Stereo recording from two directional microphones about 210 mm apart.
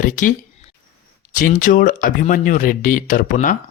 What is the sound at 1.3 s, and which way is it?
Speech, 40° left (ahead or behind).